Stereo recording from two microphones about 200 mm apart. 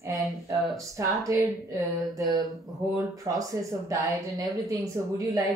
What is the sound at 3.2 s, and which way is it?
Speech, 15° right (ahead or behind).